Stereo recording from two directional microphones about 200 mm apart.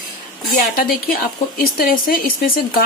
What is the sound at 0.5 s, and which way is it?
A woman's voice, 45° left (ahead or behind).